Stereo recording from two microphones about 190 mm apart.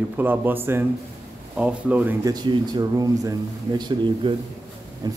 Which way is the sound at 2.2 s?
20° right (ahead or behind).